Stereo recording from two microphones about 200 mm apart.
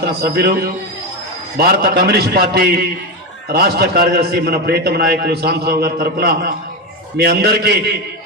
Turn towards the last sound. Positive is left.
turn(degrees=-55)  # may be behind; listen again after turning